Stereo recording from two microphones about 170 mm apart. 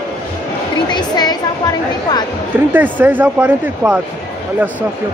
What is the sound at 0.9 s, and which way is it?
Speech, 25° left (ahead or behind).